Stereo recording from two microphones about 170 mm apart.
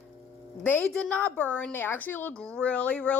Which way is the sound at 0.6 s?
10° left (ahead or behind).